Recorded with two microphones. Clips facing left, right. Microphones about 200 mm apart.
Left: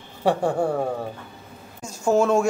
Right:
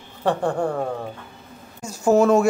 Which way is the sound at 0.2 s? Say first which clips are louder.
Left 1 dB; 10° left (ahead or behind).